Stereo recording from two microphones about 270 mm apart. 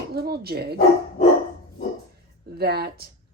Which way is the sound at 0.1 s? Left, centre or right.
Right.